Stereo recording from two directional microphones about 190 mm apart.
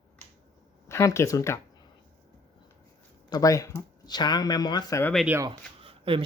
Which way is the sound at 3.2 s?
20° left (ahead or behind).